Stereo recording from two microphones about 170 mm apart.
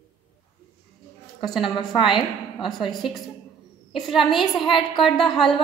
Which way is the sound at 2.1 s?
30° left (ahead or behind).